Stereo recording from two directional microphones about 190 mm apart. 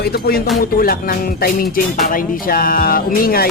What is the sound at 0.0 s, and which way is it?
Speech, 55° left (ahead or behind).